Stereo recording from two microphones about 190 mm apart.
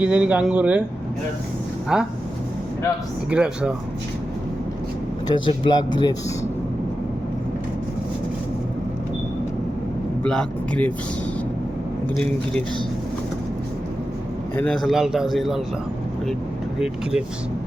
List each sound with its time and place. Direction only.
0.0 s speech: 5° right (ahead or behind)
1.9 s a man's voice: 5° right (ahead or behind)
3.2 s a man's voice: 5° right (ahead or behind)
5.3 s speech: 25° left (ahead or behind)
10.2 s a man's voice: 5° left (ahead or behind)
12.1 s a man's voice: 5° left (ahead or behind)
14.5 s a man's voice: 10° left (ahead or behind)
16.8 s a man's voice: 5° right (ahead or behind)